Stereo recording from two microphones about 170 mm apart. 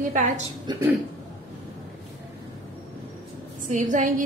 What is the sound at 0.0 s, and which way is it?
Speech, 50° right (ahead or behind).